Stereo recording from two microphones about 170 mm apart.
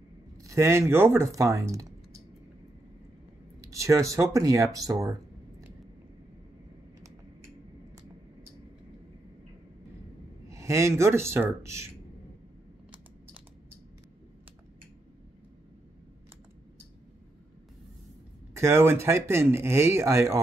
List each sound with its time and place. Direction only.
0.4 s speech: 15° right (ahead or behind)
3.6 s speech: 20° right (ahead or behind)
10.5 s speech: 15° right (ahead or behind)
18.5 s speech: 15° right (ahead or behind)